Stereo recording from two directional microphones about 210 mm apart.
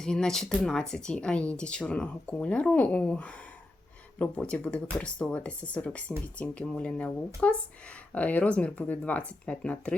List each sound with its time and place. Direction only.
0.0 s speech: 5° left (ahead or behind)